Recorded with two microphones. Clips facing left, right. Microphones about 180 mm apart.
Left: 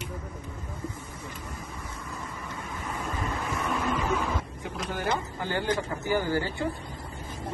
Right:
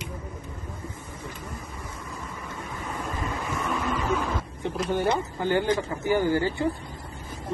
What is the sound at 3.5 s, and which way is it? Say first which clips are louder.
Vehicle: even; centre (ahead or behind).